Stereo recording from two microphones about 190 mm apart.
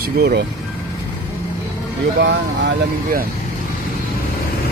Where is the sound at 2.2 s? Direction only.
70° right (ahead or behind).